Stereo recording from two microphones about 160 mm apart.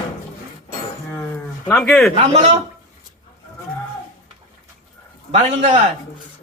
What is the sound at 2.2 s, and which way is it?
Speech, 45° right (ahead or behind).